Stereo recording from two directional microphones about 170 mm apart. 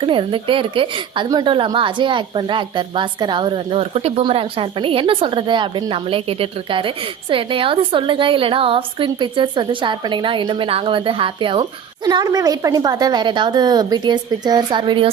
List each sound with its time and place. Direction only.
0.0 s a woman's voice: 30° right (ahead or behind)